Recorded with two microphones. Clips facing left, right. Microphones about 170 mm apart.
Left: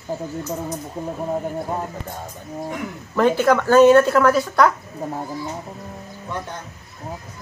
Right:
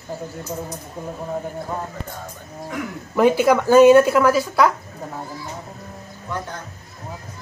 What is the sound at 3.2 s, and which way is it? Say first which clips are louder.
Speech: right 1 dB; 10° right (ahead or behind).